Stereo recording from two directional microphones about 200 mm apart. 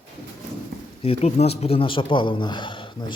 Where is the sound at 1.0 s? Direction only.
30° left (ahead or behind).